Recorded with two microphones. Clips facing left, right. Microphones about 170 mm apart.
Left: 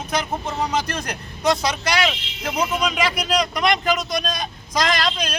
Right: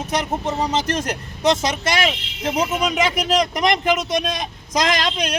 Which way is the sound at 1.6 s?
25° right (ahead or behind).